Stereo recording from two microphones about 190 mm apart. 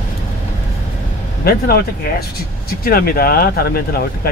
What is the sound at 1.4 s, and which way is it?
Speech, 55° left (ahead or behind).